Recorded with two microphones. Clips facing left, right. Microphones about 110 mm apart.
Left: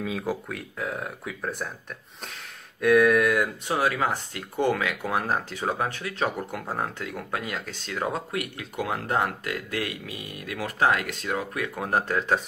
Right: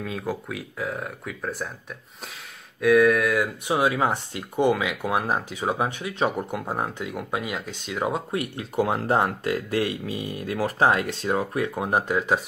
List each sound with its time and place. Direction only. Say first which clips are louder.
0.0 s speech: left 1 dB; centre (ahead or behind)
2.8 s speech: right 1 dB; centre (ahead or behind)
3.6 s speech: right 3 dB; 15° right (ahead or behind)
8.3 s speech: right 3 dB; 30° right (ahead or behind)
11.9 s speech: even; 10° right (ahead or behind)